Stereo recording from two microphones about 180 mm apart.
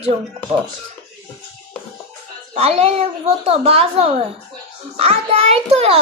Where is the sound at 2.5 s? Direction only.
35° right (ahead or behind).